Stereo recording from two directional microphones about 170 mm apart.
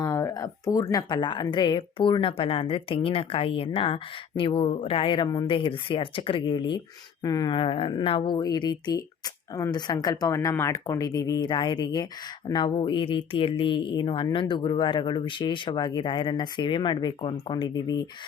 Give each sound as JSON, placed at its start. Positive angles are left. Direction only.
{"t": 0.0, "sound": "speech", "side_deg": 20}